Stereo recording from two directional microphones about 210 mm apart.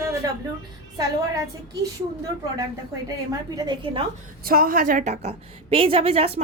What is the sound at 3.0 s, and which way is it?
A woman's voice, 20° right (ahead or behind).